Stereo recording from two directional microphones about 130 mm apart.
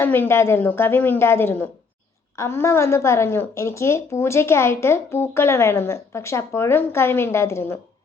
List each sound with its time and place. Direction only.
0.0 s a woman's voice: 15° left (ahead or behind)